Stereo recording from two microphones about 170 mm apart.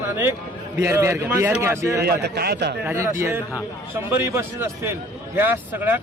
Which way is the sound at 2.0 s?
70° right (ahead or behind).